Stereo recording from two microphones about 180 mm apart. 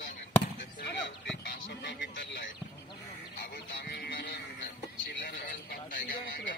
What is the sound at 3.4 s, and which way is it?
Speech, 65° left (ahead or behind).